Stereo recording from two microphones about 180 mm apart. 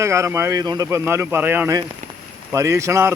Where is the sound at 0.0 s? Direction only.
15° right (ahead or behind).